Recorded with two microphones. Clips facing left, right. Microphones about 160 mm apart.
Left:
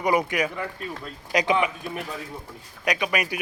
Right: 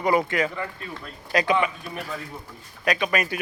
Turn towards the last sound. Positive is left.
turn(degrees=15)  # may be behind; listen again after turning